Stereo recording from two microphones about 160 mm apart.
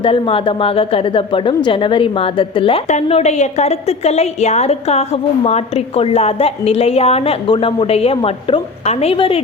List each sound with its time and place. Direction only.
0.0 s a woman's voice: 35° left (ahead or behind)